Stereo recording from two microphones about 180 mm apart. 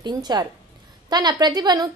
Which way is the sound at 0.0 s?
25° right (ahead or behind).